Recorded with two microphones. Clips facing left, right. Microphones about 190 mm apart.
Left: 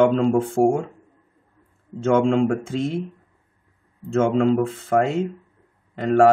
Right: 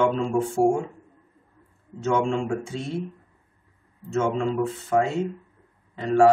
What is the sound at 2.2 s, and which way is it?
Speech, 85° left.